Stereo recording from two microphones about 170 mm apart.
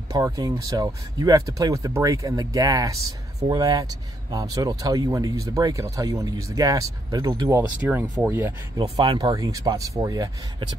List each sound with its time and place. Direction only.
0.1 s speech: 20° right (ahead or behind)
8.7 s speech: 35° right (ahead or behind)
9.0 s speech: 20° right (ahead or behind)